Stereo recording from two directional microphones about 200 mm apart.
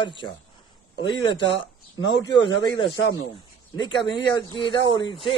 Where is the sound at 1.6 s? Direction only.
60° left (ahead or behind).